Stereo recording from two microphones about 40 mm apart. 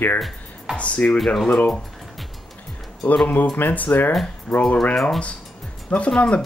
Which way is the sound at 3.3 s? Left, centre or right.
Left.